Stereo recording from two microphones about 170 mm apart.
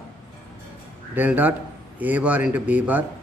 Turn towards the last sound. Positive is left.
turn(degrees=-10)  # may be behind; listen again after turning